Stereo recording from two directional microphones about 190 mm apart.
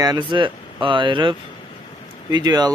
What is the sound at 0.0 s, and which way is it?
Speech, 25° right (ahead or behind).